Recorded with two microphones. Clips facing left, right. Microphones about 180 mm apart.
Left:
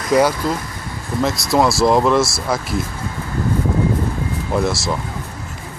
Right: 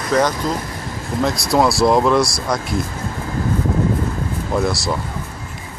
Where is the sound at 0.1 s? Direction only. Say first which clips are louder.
Left 2 dB; 10° left (ahead or behind).